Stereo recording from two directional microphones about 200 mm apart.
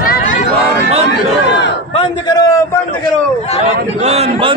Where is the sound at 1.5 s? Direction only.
60° left (ahead or behind).